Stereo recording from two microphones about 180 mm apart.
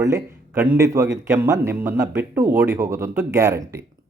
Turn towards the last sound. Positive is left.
turn(degrees=-15)  # may be behind; listen again after turning